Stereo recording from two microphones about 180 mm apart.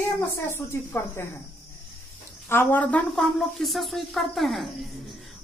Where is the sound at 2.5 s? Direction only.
10° left (ahead or behind).